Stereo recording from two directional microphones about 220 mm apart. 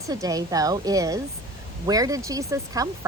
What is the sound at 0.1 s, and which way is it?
A woman's voice, 15° right (ahead or behind).